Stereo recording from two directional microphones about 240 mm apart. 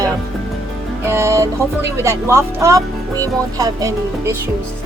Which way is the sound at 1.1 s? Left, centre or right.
Centre.